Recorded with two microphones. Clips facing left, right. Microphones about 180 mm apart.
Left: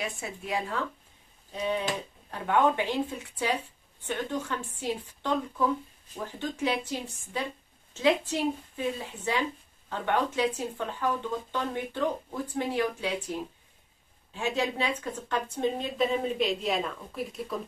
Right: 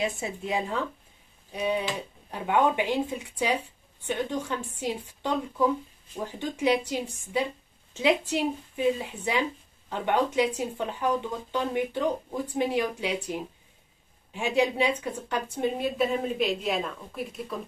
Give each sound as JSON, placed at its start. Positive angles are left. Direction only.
{"t": 0.0, "sound": "a woman's voice", "side_deg": -20}